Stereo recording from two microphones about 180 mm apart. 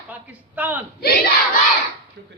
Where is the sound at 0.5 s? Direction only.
10° right (ahead or behind).